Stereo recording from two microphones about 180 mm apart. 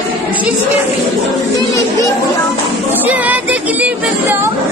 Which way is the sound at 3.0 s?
10° right (ahead or behind).